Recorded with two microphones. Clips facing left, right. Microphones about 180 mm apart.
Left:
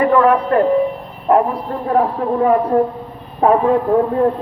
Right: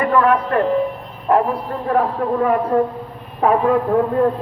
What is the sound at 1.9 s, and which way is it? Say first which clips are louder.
Speech: left 2 dB; 30° left (ahead or behind).